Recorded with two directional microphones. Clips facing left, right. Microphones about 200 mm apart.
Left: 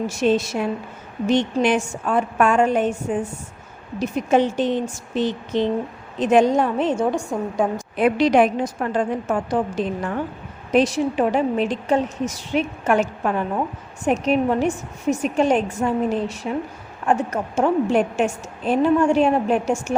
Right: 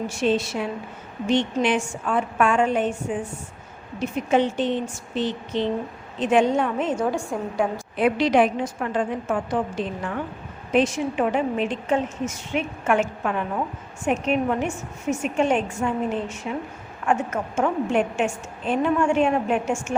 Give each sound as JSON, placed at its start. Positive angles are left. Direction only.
{"t": 0.1, "sound": "a woman's voice", "side_deg": 40}
{"t": 7.9, "sound": "a woman's voice", "side_deg": 45}